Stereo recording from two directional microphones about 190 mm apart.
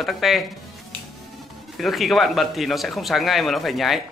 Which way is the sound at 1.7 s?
Centre (ahead or behind).